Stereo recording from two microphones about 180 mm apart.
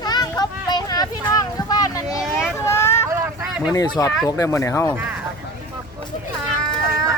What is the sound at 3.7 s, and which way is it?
Speech, 20° left (ahead or behind).